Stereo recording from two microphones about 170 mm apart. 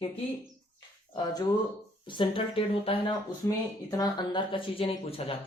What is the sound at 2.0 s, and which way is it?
Speech, 30° left (ahead or behind).